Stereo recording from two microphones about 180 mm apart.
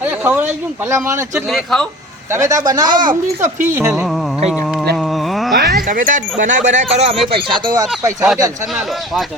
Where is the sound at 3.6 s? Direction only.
15° right (ahead or behind).